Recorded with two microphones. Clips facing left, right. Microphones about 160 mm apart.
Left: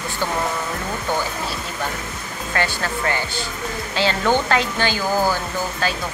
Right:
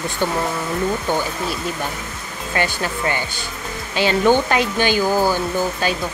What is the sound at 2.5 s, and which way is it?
Speech, 20° right (ahead or behind).